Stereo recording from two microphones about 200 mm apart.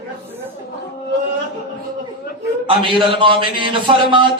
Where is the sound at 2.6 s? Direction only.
25° right (ahead or behind).